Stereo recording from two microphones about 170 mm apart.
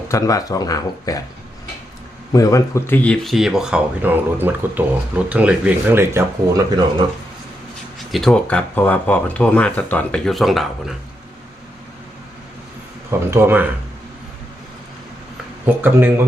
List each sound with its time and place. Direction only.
0.1 s speech: 20° left (ahead or behind)
2.3 s speech: 20° left (ahead or behind); by 6.7 s 15° right (ahead or behind)
7.9 s speech: centre (ahead or behind)
13.1 s speech: 15° right (ahead or behind)
15.6 s speech: 10° right (ahead or behind)